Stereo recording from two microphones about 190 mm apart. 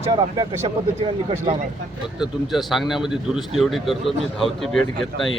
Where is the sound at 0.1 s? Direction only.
20° right (ahead or behind).